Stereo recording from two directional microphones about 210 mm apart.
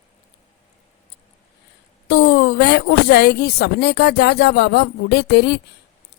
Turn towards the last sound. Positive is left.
turn(degrees=50)  # may be behind; listen again after turning